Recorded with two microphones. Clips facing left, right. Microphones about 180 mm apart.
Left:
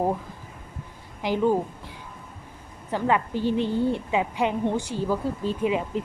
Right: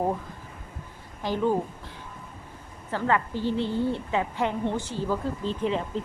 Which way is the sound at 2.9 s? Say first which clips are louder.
Left 2 dB; 15° left (ahead or behind).